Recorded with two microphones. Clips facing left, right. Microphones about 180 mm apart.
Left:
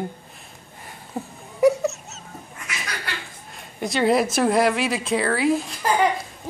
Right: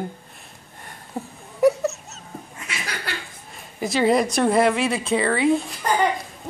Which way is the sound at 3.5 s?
Centre (ahead or behind).